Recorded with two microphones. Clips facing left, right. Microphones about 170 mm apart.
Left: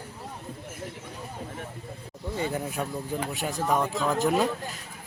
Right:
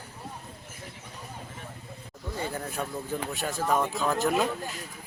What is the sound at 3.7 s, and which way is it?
Speech, centre (ahead or behind).